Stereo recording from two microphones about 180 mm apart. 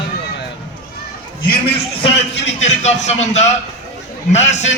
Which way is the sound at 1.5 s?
30° left (ahead or behind).